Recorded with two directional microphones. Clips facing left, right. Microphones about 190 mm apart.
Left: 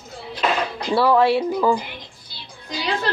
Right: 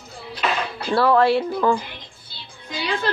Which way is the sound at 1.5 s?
15° left (ahead or behind).